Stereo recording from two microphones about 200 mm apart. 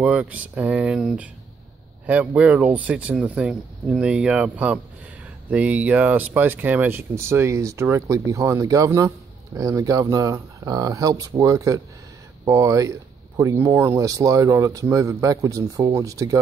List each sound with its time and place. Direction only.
0.0 s speech: 5° right (ahead or behind)